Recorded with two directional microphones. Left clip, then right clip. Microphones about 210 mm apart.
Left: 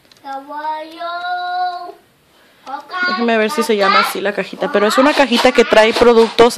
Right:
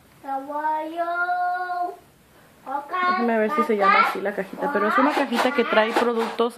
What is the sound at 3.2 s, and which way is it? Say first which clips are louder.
A child's voice: left 6 dB; 50° left (ahead or behind).